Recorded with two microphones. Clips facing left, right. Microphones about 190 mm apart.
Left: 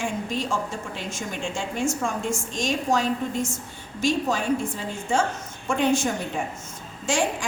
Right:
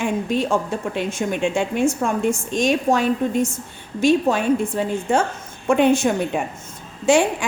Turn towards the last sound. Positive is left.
turn(degrees=-60)  # may be behind; listen again after turning